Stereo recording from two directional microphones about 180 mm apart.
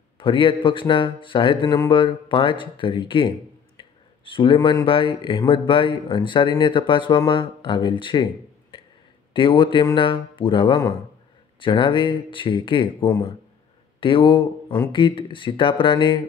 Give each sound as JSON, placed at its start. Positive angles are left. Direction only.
{"t": 0.2, "sound": "speech", "side_deg": 30}
{"t": 9.3, "sound": "speech", "side_deg": 30}